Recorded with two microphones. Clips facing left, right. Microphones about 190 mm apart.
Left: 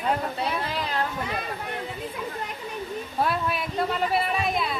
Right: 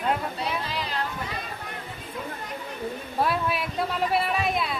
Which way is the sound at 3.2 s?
Centre (ahead or behind).